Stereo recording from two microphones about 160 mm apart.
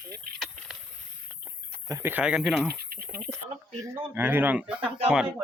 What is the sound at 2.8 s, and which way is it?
Speech, 75° right (ahead or behind).